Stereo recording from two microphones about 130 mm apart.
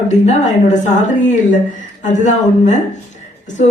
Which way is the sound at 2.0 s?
70° left (ahead or behind).